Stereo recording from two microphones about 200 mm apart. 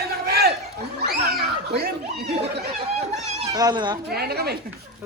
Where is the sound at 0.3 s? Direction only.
50° right (ahead or behind).